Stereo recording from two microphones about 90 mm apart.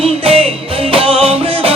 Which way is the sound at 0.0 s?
90° right.